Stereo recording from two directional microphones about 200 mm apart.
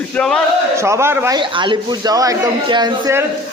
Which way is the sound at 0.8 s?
15° right (ahead or behind).